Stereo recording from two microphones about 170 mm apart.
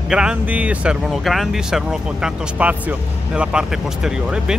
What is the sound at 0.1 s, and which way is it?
Speech, 5° right (ahead or behind).